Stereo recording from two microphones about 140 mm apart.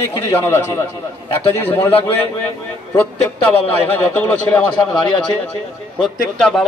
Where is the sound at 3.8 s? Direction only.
10° left (ahead or behind).